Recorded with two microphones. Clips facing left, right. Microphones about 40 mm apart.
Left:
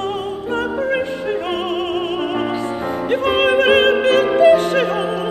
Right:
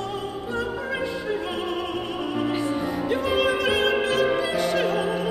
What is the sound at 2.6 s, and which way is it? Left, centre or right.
Music, left.